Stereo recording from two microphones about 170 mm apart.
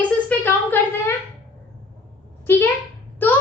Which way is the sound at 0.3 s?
10° left (ahead or behind).